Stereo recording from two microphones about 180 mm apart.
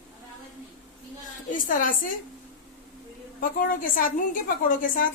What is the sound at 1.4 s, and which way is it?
Speech, 45° left (ahead or behind).